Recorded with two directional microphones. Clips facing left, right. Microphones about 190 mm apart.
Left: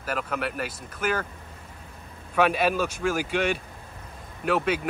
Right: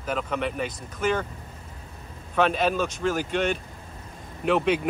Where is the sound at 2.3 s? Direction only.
10° left (ahead or behind).